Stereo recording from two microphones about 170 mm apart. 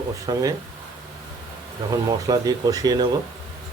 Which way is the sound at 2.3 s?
20° right (ahead or behind).